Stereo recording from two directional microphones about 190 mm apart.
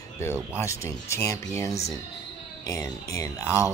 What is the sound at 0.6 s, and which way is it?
Speech, 15° left (ahead or behind).